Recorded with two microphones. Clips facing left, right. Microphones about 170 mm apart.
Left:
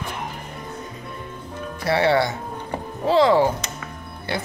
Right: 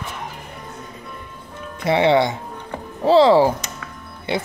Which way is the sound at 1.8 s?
20° right (ahead or behind).